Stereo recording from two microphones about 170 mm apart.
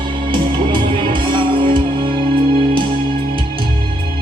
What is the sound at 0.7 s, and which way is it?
Music, 30° right (ahead or behind).